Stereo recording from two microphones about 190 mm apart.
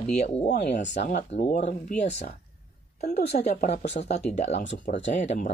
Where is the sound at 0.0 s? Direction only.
35° left (ahead or behind).